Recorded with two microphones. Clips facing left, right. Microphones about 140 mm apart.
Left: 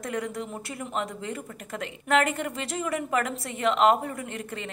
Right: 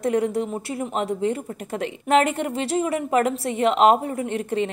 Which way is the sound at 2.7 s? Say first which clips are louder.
Right 7 dB; 30° right (ahead or behind).